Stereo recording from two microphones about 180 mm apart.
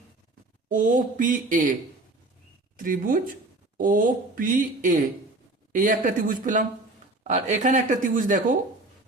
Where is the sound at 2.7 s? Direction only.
50° right (ahead or behind).